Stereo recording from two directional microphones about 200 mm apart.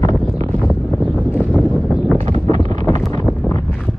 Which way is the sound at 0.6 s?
10° left (ahead or behind).